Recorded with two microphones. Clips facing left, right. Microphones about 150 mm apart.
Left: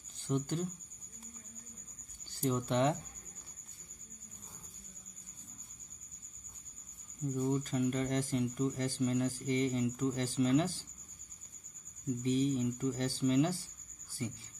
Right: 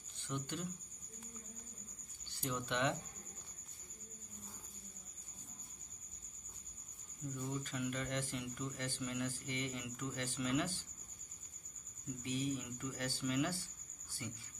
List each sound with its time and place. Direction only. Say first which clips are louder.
0.2 s speech: left 8 dB; 40° left (ahead or behind)
2.3 s speech: left 8 dB; 40° left (ahead or behind)
7.3 s speech: left 10 dB; 45° left (ahead or behind)
12.2 s speech: left 9 dB; 35° left (ahead or behind)